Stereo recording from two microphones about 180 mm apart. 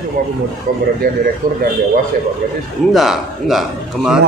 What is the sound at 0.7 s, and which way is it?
Speech, 50° right (ahead or behind).